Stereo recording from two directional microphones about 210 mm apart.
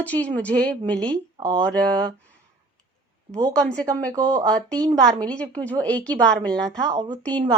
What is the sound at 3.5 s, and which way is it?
Speech, 5° left (ahead or behind).